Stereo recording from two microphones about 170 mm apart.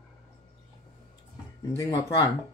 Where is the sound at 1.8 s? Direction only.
20° left (ahead or behind).